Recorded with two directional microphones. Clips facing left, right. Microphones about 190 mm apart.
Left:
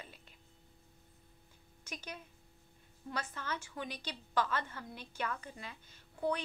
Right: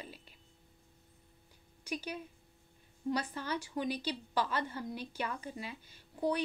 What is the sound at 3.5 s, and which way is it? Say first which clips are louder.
Speech: right 9 dB; 35° right (ahead or behind).